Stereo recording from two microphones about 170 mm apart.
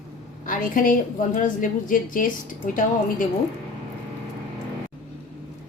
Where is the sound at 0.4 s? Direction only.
55° left (ahead or behind).